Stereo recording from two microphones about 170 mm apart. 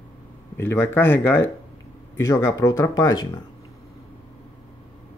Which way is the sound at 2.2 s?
20° left (ahead or behind).